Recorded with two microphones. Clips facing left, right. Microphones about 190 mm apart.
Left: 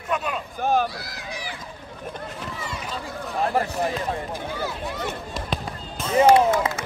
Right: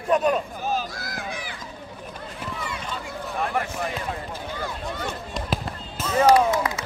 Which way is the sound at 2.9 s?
35° left (ahead or behind).